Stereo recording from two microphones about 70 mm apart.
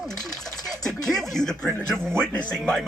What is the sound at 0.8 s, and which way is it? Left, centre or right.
Speech, centre.